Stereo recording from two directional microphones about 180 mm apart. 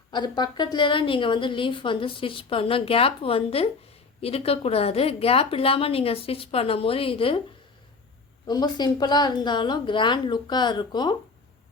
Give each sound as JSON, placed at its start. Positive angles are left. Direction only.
{"t": 0.1, "sound": "a woman's voice", "side_deg": 25}
{"t": 8.4, "sound": "a woman's voice", "side_deg": 25}